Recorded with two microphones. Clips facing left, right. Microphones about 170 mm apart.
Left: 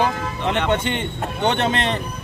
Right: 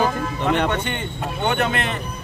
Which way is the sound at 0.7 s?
25° left (ahead or behind).